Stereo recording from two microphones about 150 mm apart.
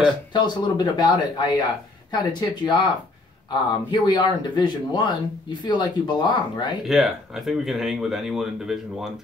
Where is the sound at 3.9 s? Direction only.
30° left (ahead or behind).